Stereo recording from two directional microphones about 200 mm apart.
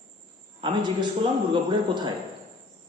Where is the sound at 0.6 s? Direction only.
20° right (ahead or behind).